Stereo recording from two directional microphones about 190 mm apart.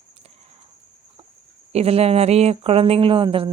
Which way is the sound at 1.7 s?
30° right (ahead or behind).